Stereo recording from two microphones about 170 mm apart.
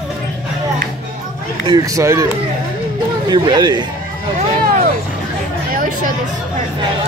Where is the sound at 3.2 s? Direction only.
25° right (ahead or behind).